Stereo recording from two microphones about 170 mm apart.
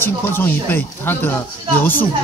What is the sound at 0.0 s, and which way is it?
Speech, 10° left (ahead or behind).